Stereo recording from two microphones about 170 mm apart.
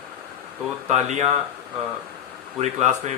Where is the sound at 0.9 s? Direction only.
45° right (ahead or behind).